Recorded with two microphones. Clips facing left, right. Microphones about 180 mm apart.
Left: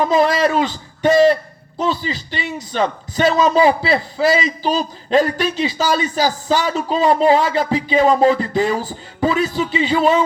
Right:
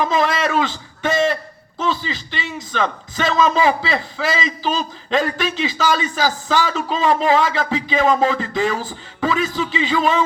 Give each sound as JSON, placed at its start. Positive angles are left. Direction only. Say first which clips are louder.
{"t": 0.0, "sound": "a man's voice", "louder": "left 4 dB", "side_deg": 35}